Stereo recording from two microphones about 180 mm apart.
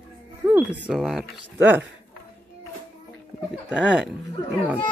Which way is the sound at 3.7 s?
5° right (ahead or behind).